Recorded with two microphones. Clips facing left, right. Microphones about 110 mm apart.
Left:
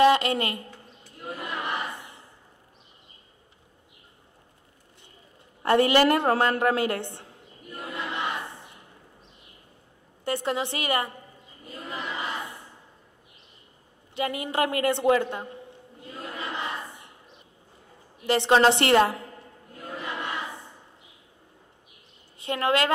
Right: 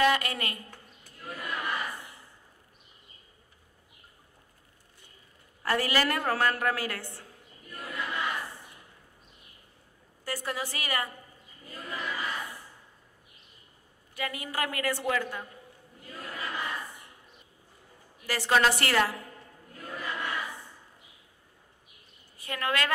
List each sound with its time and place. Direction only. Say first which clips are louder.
0.0 s a woman's voice: left 6 dB; 25° left (ahead or behind)
1.1 s crowd: left 3 dB; 25° left (ahead or behind)
5.6 s a sound: left 8 dB; 25° left (ahead or behind)
10.2 s a woman's voice: left 7 dB; 25° left (ahead or behind)
11.6 s crowd: left 2 dB; 25° left (ahead or behind)
14.1 s a sound: left 7 dB; 25° left (ahead or behind)
18.2 s a woman's voice: left 6 dB; 25° left (ahead or behind)
19.7 s crowd: left 2 dB; 25° left (ahead or behind)
22.4 s a woman's voice: left 6 dB; 25° left (ahead or behind)